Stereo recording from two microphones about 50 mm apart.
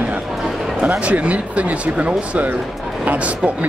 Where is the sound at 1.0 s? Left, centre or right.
Right.